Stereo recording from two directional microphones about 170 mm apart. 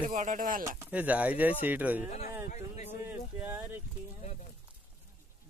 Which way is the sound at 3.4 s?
10° right (ahead or behind).